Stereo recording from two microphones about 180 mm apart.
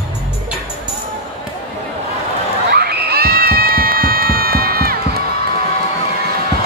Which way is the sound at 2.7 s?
60° right (ahead or behind).